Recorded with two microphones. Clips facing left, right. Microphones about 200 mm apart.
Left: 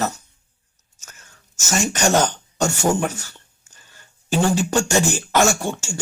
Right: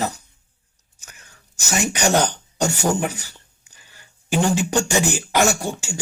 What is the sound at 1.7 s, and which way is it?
Speech, 15° right (ahead or behind).